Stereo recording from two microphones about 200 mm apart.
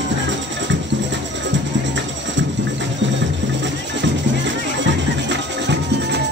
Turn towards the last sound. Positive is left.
turn(degrees=-65)  # may be behind; listen again after turning